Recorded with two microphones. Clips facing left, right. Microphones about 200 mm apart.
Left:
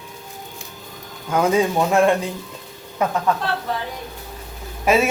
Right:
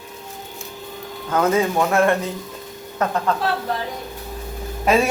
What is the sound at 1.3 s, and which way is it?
A man's voice, 15° left (ahead or behind).